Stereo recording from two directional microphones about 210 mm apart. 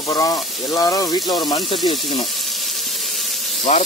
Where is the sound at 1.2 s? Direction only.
Centre (ahead or behind).